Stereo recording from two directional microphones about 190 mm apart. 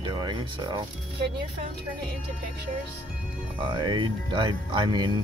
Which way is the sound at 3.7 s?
25° right (ahead or behind).